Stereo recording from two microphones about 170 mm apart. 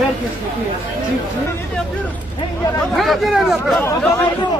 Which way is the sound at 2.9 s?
Centre (ahead or behind).